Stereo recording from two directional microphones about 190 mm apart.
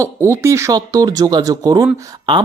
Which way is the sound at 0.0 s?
15° right (ahead or behind).